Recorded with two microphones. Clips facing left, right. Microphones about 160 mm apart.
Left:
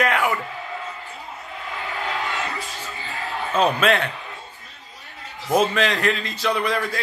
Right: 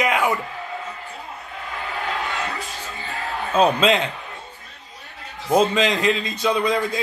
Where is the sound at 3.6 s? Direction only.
15° right (ahead or behind).